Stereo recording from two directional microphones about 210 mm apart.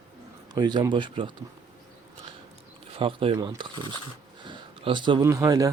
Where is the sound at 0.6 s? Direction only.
20° right (ahead or behind).